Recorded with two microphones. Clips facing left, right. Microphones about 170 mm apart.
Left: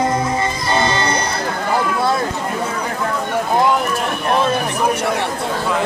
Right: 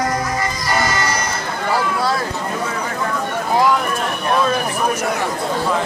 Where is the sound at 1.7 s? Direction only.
20° left (ahead or behind).